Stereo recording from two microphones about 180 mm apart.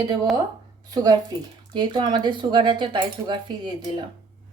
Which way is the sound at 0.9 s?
20° right (ahead or behind).